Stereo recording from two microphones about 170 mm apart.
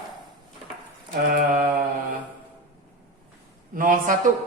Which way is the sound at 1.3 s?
55° right (ahead or behind).